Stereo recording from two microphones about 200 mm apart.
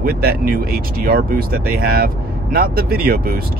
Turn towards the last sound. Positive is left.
turn(degrees=-50)  # may be behind; listen again after turning